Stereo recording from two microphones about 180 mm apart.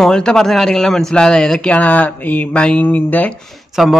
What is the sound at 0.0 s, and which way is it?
Speech, 5° left (ahead or behind).